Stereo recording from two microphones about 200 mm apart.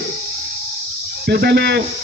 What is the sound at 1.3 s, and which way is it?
Speech, 55° right (ahead or behind).